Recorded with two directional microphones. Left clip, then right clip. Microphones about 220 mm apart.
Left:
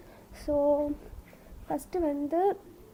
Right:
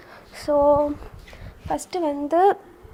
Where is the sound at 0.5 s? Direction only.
35° right (ahead or behind).